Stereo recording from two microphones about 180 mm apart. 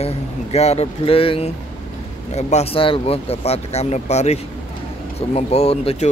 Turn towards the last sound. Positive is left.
turn(degrees=35)  # may be behind; listen again after turning